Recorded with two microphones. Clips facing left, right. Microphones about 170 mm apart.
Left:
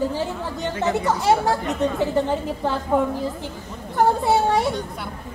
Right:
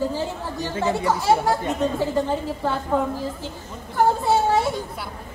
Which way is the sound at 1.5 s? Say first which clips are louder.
Even; 20° right (ahead or behind).